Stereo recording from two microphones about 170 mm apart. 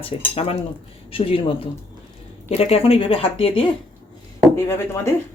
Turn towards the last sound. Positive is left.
turn(degrees=15)  # may be behind; listen again after turning